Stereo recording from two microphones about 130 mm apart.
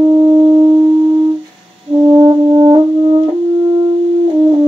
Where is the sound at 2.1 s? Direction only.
25° right (ahead or behind).